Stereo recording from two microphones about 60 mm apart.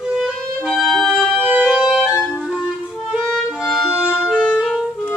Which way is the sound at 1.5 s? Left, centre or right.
Centre.